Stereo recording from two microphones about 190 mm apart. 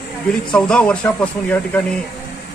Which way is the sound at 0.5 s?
5° left (ahead or behind).